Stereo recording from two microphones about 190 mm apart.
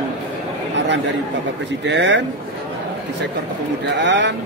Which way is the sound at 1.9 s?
70° right (ahead or behind).